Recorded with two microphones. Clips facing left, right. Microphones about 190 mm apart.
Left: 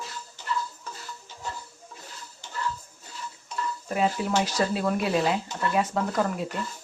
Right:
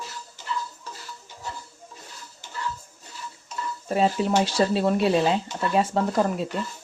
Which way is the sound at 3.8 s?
30° right (ahead or behind).